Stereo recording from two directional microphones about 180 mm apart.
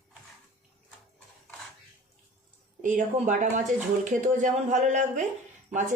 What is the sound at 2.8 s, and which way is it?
Speech, 45° right (ahead or behind).